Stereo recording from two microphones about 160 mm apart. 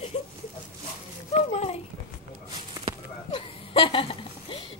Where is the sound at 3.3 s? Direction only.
35° left (ahead or behind).